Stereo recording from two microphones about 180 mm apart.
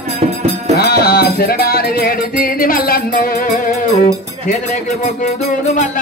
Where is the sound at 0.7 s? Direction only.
60° left (ahead or behind); by 3.8 s 40° left (ahead or behind).